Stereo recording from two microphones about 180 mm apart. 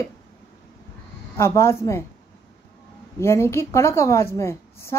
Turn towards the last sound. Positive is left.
turn(degrees=15)  # may be behind; listen again after turning